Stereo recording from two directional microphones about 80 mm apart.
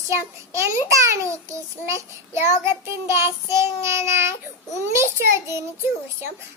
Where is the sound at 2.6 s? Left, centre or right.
Right.